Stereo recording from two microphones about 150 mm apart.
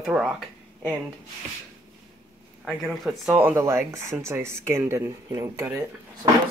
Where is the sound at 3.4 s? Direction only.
15° right (ahead or behind).